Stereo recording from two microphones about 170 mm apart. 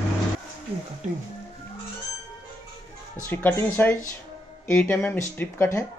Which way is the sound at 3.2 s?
10° left (ahead or behind).